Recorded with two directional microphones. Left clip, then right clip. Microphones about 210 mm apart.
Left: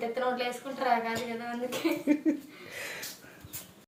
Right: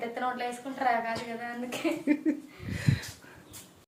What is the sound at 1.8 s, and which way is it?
Speech, 15° right (ahead or behind).